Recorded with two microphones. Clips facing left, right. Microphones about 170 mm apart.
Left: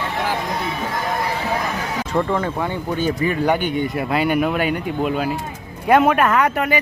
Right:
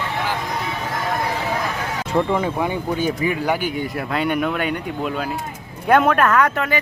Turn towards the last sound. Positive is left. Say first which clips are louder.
# even
turn(degrees=10)  # may be behind; listen again after turning